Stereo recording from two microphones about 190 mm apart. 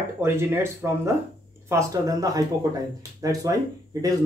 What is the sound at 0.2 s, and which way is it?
Speech, 10° right (ahead or behind).